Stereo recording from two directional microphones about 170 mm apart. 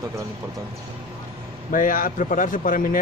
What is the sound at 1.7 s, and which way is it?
A man's voice, 50° left (ahead or behind).